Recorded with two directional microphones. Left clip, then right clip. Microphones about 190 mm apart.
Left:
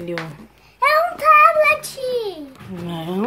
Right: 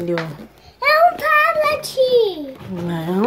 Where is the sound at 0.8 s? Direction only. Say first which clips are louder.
Right 1 dB; 40° left (ahead or behind).